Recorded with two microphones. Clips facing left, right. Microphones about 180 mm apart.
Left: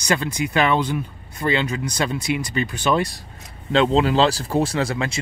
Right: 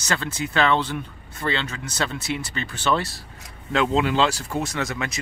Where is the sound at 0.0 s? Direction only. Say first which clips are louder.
Left 5 dB; 15° left (ahead or behind).